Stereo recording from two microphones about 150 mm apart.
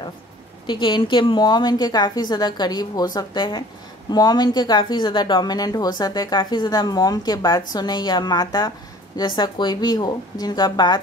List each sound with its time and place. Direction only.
0.7 s speech: 30° left (ahead or behind)